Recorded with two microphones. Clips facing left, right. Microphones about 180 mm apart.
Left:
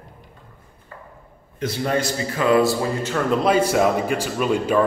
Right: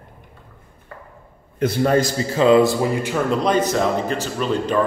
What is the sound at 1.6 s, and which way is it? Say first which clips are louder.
Speech: right 5 dB; 50° right (ahead or behind).